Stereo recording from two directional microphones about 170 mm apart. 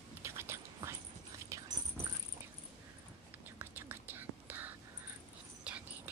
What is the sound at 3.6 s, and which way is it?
Whispering, 10° right (ahead or behind).